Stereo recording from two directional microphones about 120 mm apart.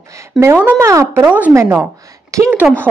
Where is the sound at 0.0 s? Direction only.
25° right (ahead or behind).